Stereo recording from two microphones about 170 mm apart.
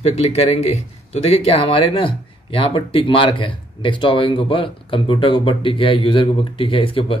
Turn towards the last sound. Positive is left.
turn(degrees=30)  # may be behind; listen again after turning